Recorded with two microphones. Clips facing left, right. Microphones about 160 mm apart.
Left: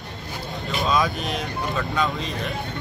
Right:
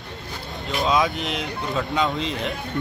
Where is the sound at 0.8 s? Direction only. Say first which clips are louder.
Right 2 dB; 20° right (ahead or behind).